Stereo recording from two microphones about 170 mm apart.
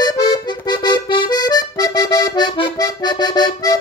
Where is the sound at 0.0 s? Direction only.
25° left (ahead or behind).